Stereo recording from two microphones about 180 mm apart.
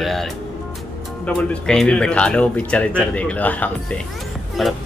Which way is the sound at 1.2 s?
5° left (ahead or behind).